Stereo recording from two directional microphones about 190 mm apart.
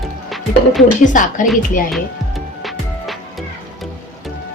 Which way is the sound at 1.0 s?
40° left (ahead or behind).